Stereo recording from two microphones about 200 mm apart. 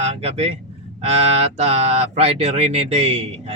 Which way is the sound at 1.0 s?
30° right (ahead or behind).